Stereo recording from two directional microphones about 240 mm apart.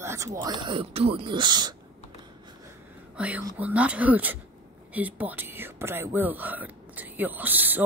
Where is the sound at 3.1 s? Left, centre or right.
Centre.